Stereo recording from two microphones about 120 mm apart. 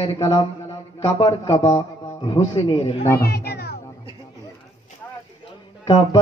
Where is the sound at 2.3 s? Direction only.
40° left (ahead or behind).